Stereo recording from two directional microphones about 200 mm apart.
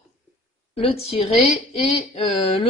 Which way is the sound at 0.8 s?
30° left (ahead or behind).